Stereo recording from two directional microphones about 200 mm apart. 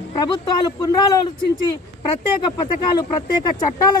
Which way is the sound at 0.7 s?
15° left (ahead or behind).